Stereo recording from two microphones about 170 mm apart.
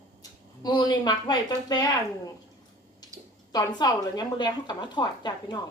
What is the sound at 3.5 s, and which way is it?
A woman's voice, 25° left (ahead or behind).